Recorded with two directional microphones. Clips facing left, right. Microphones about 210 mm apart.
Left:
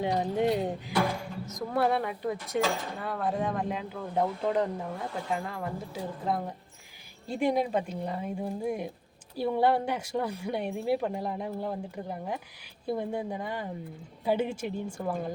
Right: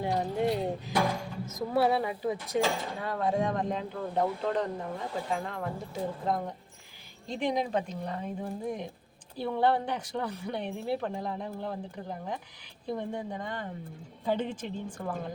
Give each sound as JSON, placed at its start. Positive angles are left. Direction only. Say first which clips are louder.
{"t": 0.0, "sound": "speech", "louder": "left 2 dB", "side_deg": 20}
{"t": 1.5, "sound": "speech", "louder": "right 1 dB", "side_deg": -5}